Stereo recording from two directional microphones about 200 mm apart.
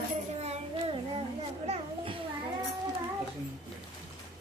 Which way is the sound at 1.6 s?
35° right (ahead or behind).